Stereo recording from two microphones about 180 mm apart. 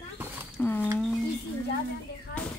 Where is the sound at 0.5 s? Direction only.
10° left (ahead or behind).